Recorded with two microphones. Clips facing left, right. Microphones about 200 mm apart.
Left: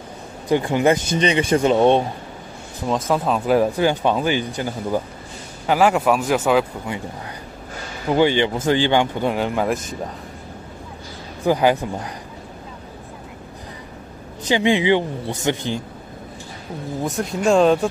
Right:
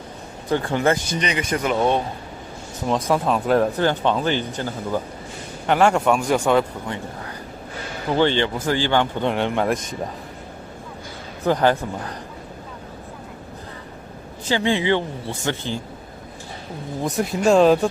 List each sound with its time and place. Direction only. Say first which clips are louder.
0.5 s speech: left 3 dB; 15° left (ahead or behind)
2.9 s speech: even; centre (ahead or behind)
8.1 s speech: left 2 dB; 10° left (ahead or behind)
9.3 s speech: even; centre (ahead or behind)
11.4 s speech: left 1 dB; 10° left (ahead or behind)
14.4 s speech: left 3 dB; 15° left (ahead or behind)
17.0 s speech: right 1 dB; centre (ahead or behind)